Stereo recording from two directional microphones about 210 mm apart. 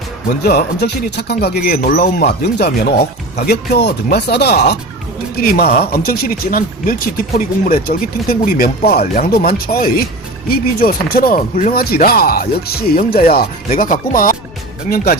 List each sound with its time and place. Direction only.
0.4 s speech: 50° left (ahead or behind)